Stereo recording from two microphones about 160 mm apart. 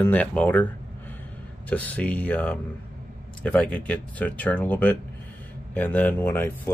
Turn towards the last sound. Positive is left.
turn(degrees=15)  # may be behind; listen again after turning